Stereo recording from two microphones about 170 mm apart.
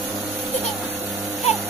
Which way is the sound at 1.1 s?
Centre (ahead or behind).